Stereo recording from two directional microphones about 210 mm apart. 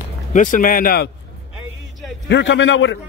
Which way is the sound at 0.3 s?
40° left (ahead or behind).